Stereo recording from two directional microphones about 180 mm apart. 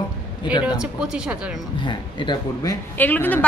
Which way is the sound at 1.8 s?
25° left (ahead or behind).